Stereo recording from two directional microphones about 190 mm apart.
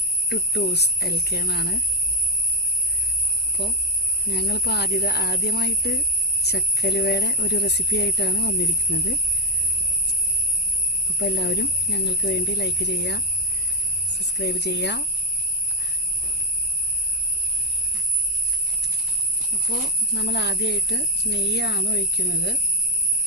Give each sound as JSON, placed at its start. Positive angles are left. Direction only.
{"t": 0.3, "sound": "speech", "side_deg": 60}
{"t": 3.6, "sound": "speech", "side_deg": 60}
{"t": 11.2, "sound": "speech", "side_deg": 65}
{"t": 20.1, "sound": "speech", "side_deg": 65}